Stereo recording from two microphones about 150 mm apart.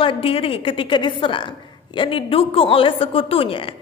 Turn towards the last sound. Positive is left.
turn(degrees=35)  # may be behind; listen again after turning